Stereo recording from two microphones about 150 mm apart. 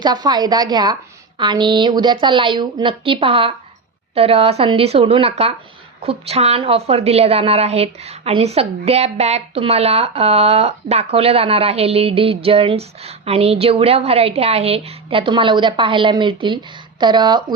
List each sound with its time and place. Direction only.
0.0 s a woman's voice: 30° right (ahead or behind)